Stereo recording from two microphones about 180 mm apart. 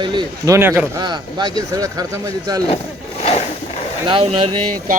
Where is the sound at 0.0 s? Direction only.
25° right (ahead or behind).